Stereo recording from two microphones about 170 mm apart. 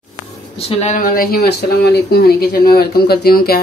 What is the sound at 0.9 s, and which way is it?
Speech, 55° left (ahead or behind).